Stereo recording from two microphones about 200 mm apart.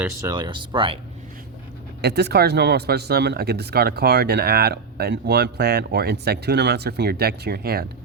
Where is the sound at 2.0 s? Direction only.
55° right (ahead or behind).